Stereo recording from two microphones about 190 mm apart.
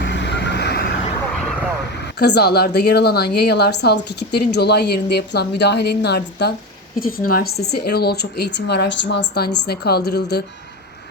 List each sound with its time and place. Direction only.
0.0 s vehicle: 65° left (ahead or behind)
2.1 s a woman's voice: 60° left (ahead or behind)